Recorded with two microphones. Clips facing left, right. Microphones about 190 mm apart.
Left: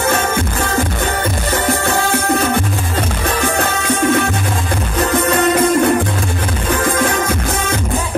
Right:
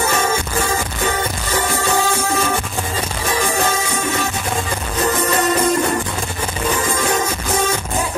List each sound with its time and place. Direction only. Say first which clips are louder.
1.7 s music: left 2 dB; 60° left (ahead or behind)
3.5 s music: left 2 dB; 60° left (ahead or behind)
6.8 s music: left 4 dB; 60° left (ahead or behind)